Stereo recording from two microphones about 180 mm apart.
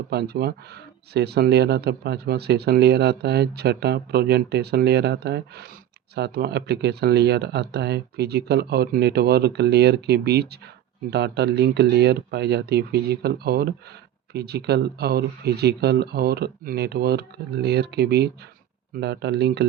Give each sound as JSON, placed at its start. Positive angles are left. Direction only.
{"t": 0.1, "sound": "speech", "side_deg": -60}